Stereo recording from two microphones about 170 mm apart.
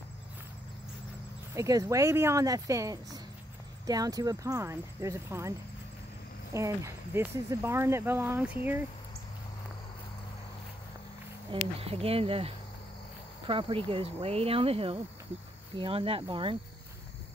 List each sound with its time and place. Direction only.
1.5 s speech: 20° right (ahead or behind)
6.5 s speech: 20° right (ahead or behind)
11.8 s speech: 35° right (ahead or behind)